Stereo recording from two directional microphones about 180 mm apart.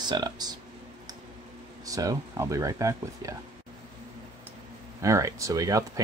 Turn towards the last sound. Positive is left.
turn(degrees=-20)  # may be behind; listen again after turning